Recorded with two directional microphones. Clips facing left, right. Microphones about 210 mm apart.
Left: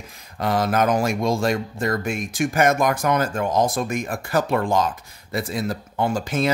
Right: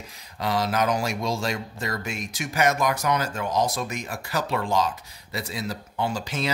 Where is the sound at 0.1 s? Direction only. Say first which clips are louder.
Left 4 dB; 50° left (ahead or behind).